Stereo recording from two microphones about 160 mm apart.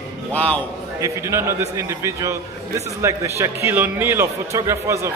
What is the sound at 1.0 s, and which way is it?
A man's voice, 15° right (ahead or behind).